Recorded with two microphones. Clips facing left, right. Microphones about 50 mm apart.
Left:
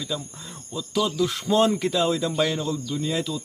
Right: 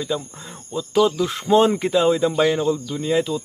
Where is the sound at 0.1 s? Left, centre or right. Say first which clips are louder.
Right 5 dB; right.